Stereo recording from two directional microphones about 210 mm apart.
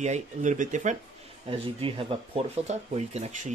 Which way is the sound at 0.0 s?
35° right (ahead or behind).